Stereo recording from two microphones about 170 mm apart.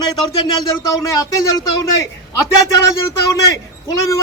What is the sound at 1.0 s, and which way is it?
Speech, 20° left (ahead or behind).